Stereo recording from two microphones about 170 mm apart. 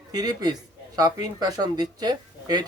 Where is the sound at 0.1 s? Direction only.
25° right (ahead or behind).